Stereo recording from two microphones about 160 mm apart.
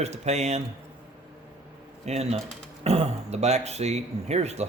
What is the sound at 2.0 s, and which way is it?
Speech, 40° right (ahead or behind).